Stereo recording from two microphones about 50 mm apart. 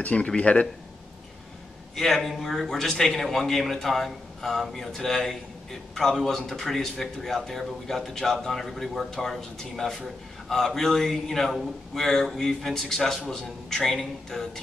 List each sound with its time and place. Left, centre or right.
0.0 s speech: left
2.0 s a man's voice: centre